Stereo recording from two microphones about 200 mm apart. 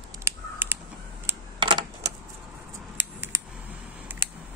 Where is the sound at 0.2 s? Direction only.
10° right (ahead or behind).